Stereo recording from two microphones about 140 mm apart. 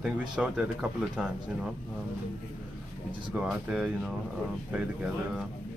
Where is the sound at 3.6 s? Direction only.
5° right (ahead or behind).